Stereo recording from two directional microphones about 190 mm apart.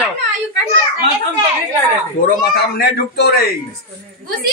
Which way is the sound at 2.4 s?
55° left (ahead or behind).